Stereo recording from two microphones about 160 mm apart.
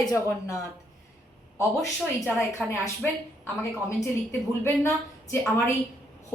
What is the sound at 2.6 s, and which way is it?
A woman's voice, 15° left (ahead or behind).